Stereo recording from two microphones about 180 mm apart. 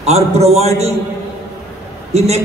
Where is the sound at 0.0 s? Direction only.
35° right (ahead or behind).